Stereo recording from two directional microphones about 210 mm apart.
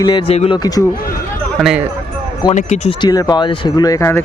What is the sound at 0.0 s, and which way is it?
Speech, 25° left (ahead or behind).